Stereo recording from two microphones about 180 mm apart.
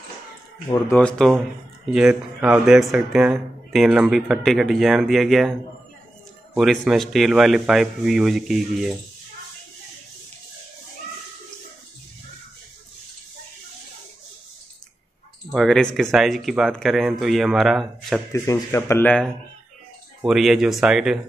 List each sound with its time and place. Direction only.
0.9 s speech: 5° left (ahead or behind)
15.5 s speech: centre (ahead or behind)
18.3 s speech: 15° left (ahead or behind); by 21.2 s 5° right (ahead or behind)